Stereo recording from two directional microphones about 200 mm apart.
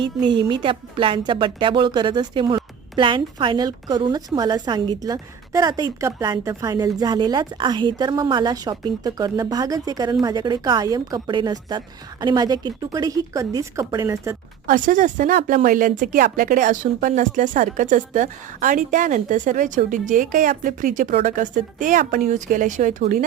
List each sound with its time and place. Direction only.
0.3 s speech: 25° right (ahead or behind)
14.7 s speech: 40° right (ahead or behind)